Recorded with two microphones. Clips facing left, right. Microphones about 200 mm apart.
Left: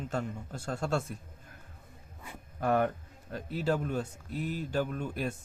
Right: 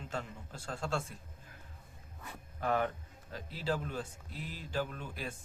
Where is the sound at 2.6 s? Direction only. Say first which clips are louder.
Left 5 dB; 50° left (ahead or behind).